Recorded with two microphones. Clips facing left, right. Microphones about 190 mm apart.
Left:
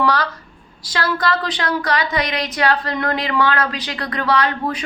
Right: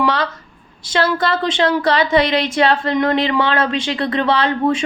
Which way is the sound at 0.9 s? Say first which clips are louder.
Right 3 dB; 25° right (ahead or behind).